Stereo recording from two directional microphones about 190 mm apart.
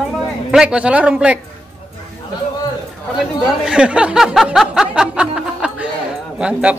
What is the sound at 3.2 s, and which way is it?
Speech, 5° right (ahead or behind).